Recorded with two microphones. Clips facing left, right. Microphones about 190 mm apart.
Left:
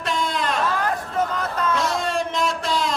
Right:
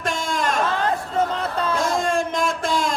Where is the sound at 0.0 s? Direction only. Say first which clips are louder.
Even; 45° right (ahead or behind).